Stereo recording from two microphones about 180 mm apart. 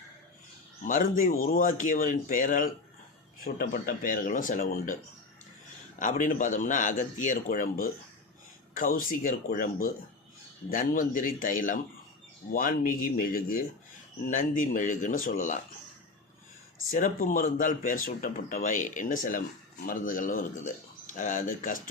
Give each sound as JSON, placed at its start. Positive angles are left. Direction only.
{"t": 0.9, "sound": "speech", "side_deg": 50}
{"t": 6.0, "sound": "speech", "side_deg": 45}
{"t": 16.9, "sound": "speech", "side_deg": 45}